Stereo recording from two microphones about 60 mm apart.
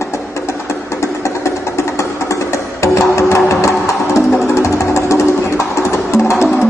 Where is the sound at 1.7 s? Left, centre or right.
Left.